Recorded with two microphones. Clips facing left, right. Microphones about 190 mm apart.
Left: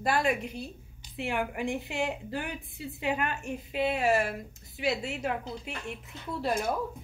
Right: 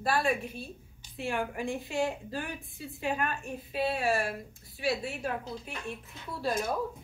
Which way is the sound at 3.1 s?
20° left (ahead or behind).